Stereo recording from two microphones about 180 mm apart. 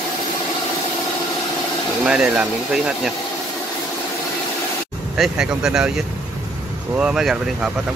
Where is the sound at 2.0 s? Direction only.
5° right (ahead or behind).